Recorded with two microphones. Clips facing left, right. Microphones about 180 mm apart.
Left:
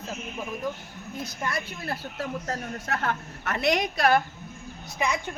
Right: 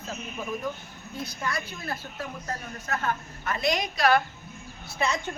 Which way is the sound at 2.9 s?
70° left (ahead or behind).